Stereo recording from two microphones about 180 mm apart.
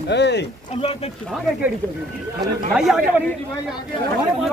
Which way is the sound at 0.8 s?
35° left (ahead or behind).